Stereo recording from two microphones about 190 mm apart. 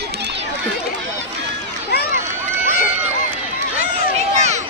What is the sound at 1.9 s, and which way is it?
Run, 60° left (ahead or behind).